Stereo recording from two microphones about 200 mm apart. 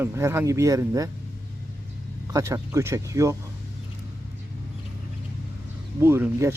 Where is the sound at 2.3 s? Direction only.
15° right (ahead or behind).